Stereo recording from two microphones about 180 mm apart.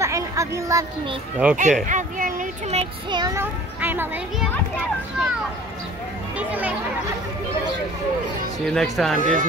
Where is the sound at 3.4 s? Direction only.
10° right (ahead or behind).